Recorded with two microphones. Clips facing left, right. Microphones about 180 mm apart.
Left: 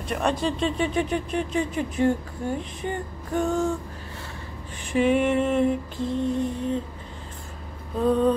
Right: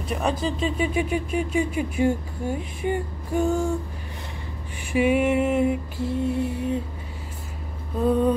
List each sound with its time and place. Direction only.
0.1 s speech: 5° right (ahead or behind)
4.9 s speech: 10° right (ahead or behind)
8.0 s speech: 10° right (ahead or behind)